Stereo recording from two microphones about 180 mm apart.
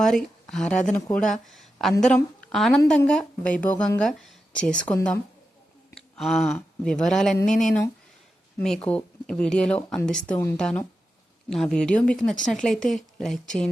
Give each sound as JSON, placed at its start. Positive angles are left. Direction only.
{"t": 0.0, "sound": "a woman's voice", "side_deg": 0}
{"t": 7.4, "sound": "speech", "side_deg": 45}
{"t": 8.5, "sound": "speech", "side_deg": 5}